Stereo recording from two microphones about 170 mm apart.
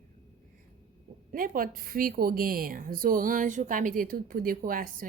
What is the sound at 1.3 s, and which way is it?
A woman's voice, 55° right (ahead or behind).